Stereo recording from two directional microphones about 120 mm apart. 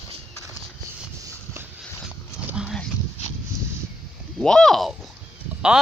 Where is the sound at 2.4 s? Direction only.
5° right (ahead or behind).